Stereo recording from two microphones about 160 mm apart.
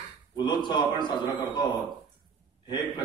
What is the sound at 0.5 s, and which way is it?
A man's voice, 30° left (ahead or behind).